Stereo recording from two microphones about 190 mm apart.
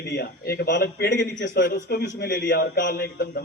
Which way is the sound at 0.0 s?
55° left (ahead or behind).